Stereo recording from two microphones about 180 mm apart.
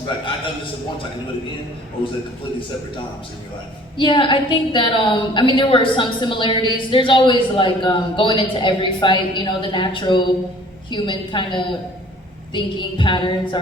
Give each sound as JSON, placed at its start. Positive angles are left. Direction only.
{"t": 3.9, "sound": "a woman's voice", "side_deg": 25}